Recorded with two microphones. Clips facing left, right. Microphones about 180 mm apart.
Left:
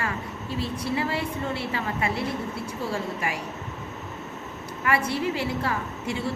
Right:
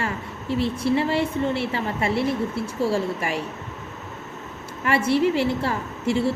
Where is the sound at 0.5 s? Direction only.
25° right (ahead or behind).